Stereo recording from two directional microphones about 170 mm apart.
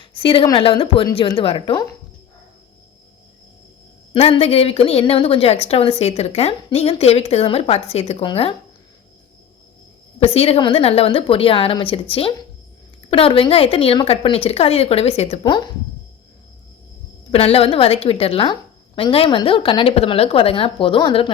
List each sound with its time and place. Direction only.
0.0 s a woman's voice: 30° left (ahead or behind)
4.1 s a woman's voice: 35° left (ahead or behind)
10.2 s a woman's voice: 35° left (ahead or behind)
17.3 s a woman's voice: 35° left (ahead or behind)